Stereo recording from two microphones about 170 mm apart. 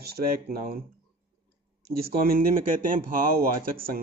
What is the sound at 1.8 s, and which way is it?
Speech, 65° right (ahead or behind).